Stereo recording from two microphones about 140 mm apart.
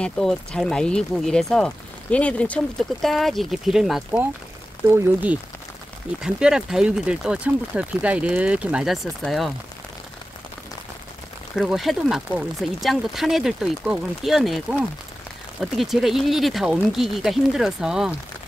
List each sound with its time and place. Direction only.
0.0 s speech: 5° left (ahead or behind)
4.8 s speech: 15° right (ahead or behind); by 9.5 s centre (ahead or behind)
11.5 s speech: centre (ahead or behind)